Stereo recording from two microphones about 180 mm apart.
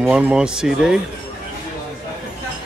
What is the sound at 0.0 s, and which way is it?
Speech, 5° right (ahead or behind).